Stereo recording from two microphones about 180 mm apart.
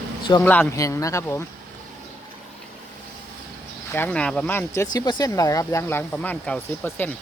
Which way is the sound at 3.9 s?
10° left (ahead or behind).